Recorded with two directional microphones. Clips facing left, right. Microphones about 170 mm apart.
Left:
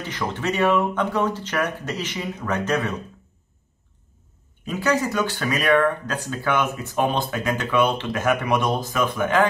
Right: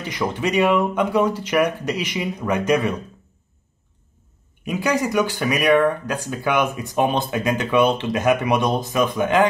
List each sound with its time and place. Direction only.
0.1 s speech: 10° right (ahead or behind)
4.6 s speech: 15° right (ahead or behind)